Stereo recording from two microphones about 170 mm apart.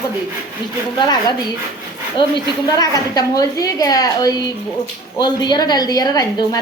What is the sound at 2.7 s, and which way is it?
A woman's voice, 20° left (ahead or behind).